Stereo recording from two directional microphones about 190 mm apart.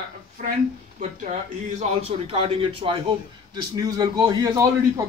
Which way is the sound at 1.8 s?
35° right (ahead or behind).